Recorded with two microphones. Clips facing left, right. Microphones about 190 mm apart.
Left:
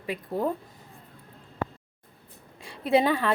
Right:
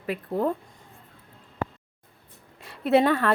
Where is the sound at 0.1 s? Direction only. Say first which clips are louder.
Right 2 dB; 5° left (ahead or behind).